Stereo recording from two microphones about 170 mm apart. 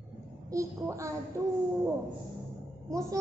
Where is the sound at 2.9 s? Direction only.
20° right (ahead or behind).